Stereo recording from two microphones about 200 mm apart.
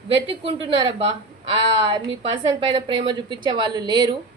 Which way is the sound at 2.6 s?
25° right (ahead or behind).